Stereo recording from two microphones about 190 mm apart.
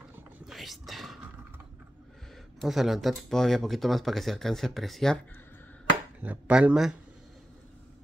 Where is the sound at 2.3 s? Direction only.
Centre (ahead or behind).